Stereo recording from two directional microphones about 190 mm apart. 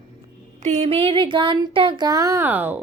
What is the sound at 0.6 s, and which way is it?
Speech, 35° right (ahead or behind).